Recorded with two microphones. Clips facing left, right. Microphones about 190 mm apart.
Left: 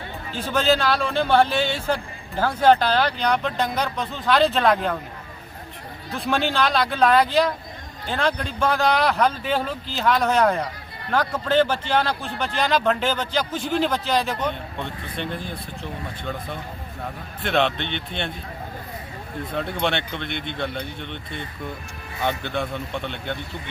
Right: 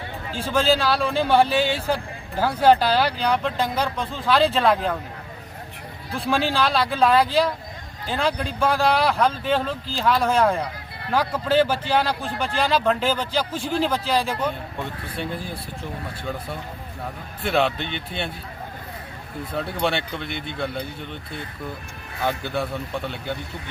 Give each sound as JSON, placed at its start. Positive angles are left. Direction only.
{"t": 0.5, "sound": "speech", "side_deg": 0}
{"t": 6.2, "sound": "speech", "side_deg": 0}
{"t": 9.2, "sound": "speech", "side_deg": 5}
{"t": 13.5, "sound": "a man's voice", "side_deg": -35}
{"t": 13.8, "sound": "speech", "side_deg": -5}
{"t": 19.5, "sound": "speech", "side_deg": -5}